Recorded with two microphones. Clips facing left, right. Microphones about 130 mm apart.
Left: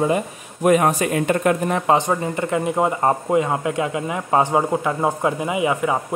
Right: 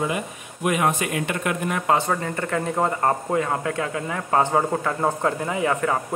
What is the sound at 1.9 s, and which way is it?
Speech, 20° left (ahead or behind).